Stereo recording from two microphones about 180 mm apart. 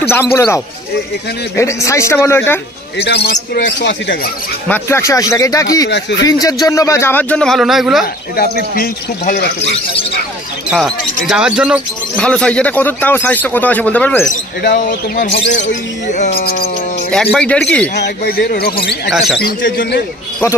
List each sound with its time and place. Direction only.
0.1 s speech: 10° left (ahead or behind)
1.6 s speech: 15° left (ahead or behind)
3.1 s a man's voice: 60° left (ahead or behind)
4.6 s speech: 10° left (ahead or behind)
5.9 s speech: 75° left (ahead or behind)
6.2 s speech: 20° left (ahead or behind); by 8.0 s centre (ahead or behind)
8.4 s a man's voice: 55° left (ahead or behind)
11.2 s a man's voice: 5° right (ahead or behind)
12.2 s speech: 5° left (ahead or behind)
14.6 s a man's voice: 55° left (ahead or behind)
16.1 s speech: 40° left (ahead or behind)
16.3 s a man's voice: 55° left (ahead or behind)
17.1 s a man's voice: 5° left (ahead or behind)
17.9 s a man's voice: 65° left (ahead or behind)